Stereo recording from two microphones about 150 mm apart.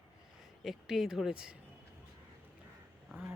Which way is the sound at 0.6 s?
Centre (ahead or behind).